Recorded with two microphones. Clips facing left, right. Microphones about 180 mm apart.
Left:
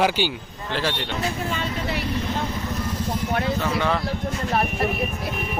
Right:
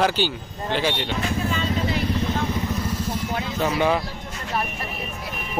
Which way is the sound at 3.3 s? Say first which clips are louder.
Left 4 dB; 60° left (ahead or behind).